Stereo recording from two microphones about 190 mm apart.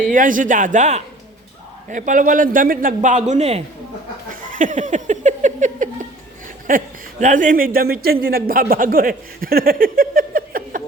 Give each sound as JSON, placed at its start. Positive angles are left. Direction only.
{"t": 0.1, "sound": "speech", "side_deg": -45}
{"t": 4.5, "sound": "a sound", "side_deg": -40}
{"t": 6.7, "sound": "speech", "side_deg": -45}